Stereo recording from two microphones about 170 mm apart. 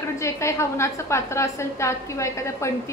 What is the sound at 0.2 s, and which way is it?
A woman's voice, 15° left (ahead or behind).